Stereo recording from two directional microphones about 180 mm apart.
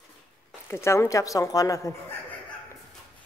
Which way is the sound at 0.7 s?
15° left (ahead or behind).